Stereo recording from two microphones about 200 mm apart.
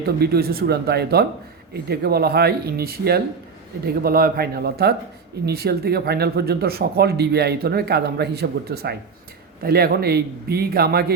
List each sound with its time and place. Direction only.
0.2 s speech: 50° right (ahead or behind)